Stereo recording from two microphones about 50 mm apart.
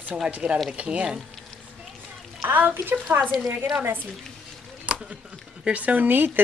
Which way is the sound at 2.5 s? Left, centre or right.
Right.